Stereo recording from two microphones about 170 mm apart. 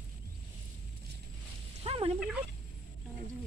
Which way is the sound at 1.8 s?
35° right (ahead or behind).